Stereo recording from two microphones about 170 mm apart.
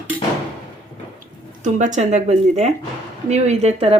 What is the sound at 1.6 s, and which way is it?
Speech, 45° right (ahead or behind).